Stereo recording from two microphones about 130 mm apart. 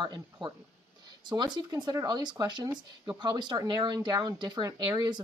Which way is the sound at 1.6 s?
30° right (ahead or behind).